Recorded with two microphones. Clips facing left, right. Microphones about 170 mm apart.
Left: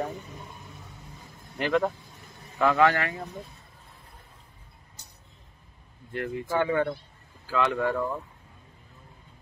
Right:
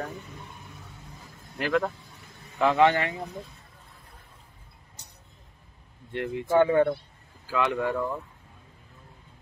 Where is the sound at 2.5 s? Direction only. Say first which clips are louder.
Right 1 dB; 20° right (ahead or behind).